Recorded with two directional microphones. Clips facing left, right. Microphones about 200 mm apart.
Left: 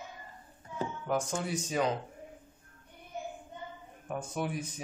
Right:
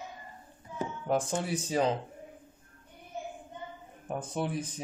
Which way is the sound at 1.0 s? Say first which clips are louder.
Right 3 dB; 30° right (ahead or behind).